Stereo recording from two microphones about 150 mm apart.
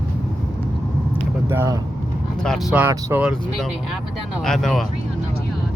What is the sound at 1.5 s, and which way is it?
Speech, 15° right (ahead or behind).